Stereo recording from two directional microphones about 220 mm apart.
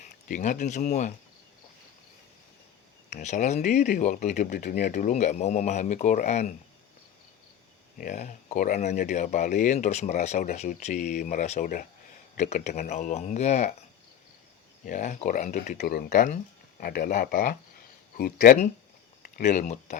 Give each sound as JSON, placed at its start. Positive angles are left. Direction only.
{"t": 0.0, "sound": "speech", "side_deg": 35}
{"t": 3.1, "sound": "speech", "side_deg": 35}
{"t": 7.9, "sound": "speech", "side_deg": 35}
{"t": 14.8, "sound": "speech", "side_deg": 35}